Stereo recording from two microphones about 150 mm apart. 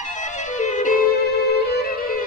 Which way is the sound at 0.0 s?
55° left (ahead or behind).